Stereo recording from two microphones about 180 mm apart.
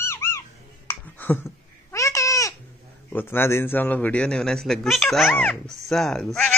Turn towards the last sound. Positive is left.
turn(degrees=5)  # may be behind; listen again after turning